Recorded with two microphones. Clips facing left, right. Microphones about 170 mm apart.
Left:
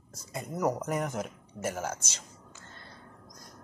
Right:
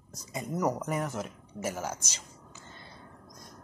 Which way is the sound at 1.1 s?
5° right (ahead or behind).